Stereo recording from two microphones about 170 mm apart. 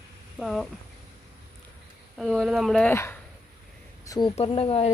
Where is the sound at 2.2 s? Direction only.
Centre (ahead or behind).